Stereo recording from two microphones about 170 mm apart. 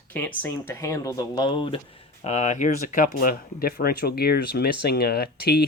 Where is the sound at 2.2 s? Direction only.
45° left (ahead or behind).